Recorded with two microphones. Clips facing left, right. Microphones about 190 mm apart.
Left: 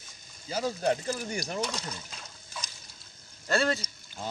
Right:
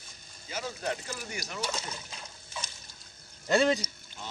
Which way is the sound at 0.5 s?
35° left (ahead or behind).